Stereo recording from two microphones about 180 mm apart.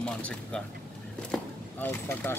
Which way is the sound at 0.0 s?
5° left (ahead or behind).